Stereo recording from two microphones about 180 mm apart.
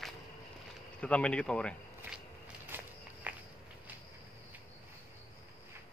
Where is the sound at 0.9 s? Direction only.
5° left (ahead or behind).